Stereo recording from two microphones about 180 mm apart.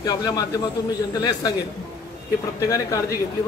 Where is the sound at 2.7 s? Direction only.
15° left (ahead or behind).